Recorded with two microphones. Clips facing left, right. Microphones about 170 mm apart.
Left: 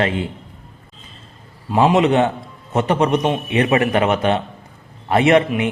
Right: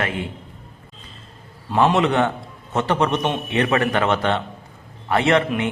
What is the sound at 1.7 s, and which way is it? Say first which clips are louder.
Speech: left 2 dB; 10° left (ahead or behind).